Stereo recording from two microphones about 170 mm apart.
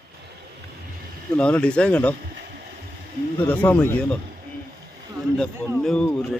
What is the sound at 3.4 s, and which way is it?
Speech, 10° left (ahead or behind).